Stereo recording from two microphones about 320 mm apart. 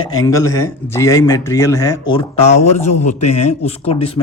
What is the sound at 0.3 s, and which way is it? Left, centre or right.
Speech, centre.